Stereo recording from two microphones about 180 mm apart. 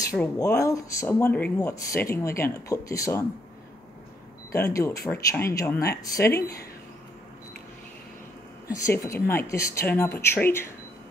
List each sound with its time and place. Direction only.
0.0 s speech: 15° left (ahead or behind)
4.5 s speech: 15° left (ahead or behind)
8.6 s speech: 15° left (ahead or behind)